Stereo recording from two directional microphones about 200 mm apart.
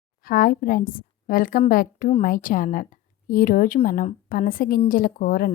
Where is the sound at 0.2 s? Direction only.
45° left (ahead or behind).